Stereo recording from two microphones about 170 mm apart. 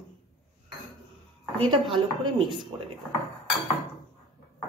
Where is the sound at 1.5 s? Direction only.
30° right (ahead or behind).